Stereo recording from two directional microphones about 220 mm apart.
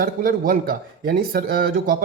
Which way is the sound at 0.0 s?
45° right (ahead or behind).